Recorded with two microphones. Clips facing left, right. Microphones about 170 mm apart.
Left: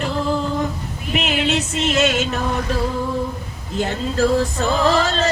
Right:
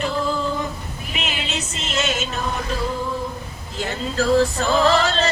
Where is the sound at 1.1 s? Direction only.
60° left (ahead or behind).